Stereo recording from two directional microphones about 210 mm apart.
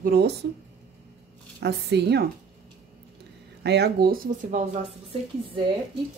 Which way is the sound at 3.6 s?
55° right (ahead or behind).